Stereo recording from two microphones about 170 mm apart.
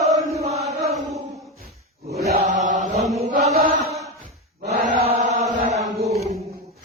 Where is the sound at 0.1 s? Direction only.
20° right (ahead or behind).